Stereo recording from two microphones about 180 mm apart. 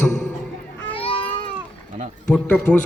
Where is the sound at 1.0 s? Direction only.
30° left (ahead or behind).